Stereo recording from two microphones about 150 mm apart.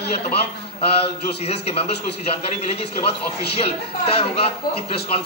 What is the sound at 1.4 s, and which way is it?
Speech, 40° left (ahead or behind).